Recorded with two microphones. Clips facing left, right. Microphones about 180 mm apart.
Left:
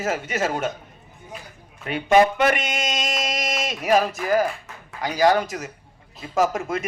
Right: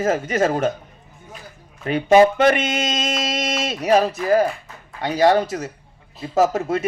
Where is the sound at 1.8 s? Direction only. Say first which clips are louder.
Right 4 dB; 35° right (ahead or behind).